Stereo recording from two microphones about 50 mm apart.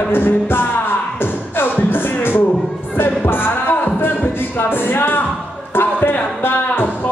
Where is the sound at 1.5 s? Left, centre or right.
Left.